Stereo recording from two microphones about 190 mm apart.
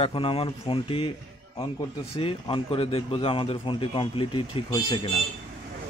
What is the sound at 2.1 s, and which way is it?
A man's voice, 30° left (ahead or behind).